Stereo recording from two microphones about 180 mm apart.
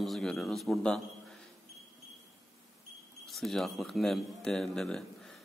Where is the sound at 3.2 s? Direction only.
Centre (ahead or behind).